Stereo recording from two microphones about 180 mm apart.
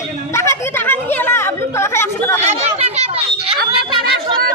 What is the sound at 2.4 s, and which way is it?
Speech, 35° right (ahead or behind).